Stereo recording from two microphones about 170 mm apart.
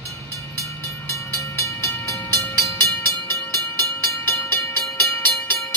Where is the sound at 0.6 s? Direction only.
15° left (ahead or behind).